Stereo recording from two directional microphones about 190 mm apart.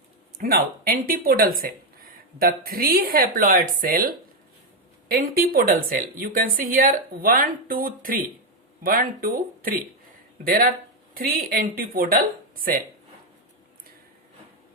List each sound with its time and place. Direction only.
0.3 s speech: 50° right (ahead or behind)